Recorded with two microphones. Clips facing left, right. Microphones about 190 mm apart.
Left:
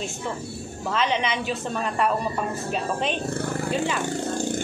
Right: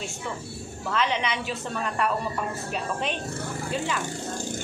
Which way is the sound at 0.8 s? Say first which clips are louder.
Left 2 dB; 20° left (ahead or behind).